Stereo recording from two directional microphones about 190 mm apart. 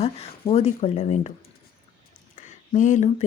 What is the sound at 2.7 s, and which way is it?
Speech, 40° left (ahead or behind).